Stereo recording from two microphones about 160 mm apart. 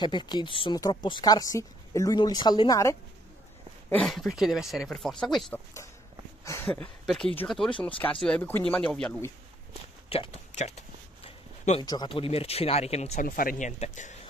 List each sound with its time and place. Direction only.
0.0 s speech: 30° left (ahead or behind)
3.9 s speech: centre (ahead or behind)
6.4 s speech: 15° left (ahead or behind)
10.0 s speech: 35° left (ahead or behind)
11.2 s a sound: 40° left (ahead or behind)
11.8 s speech: 20° left (ahead or behind)
12.1 s speech: 35° left (ahead or behind)
13.2 s speech: 60° left (ahead or behind)